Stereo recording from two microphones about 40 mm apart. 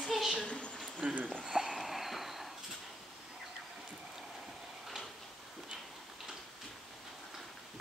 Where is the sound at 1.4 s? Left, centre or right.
Centre.